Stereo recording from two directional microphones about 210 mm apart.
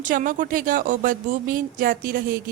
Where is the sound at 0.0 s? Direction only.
40° right (ahead or behind).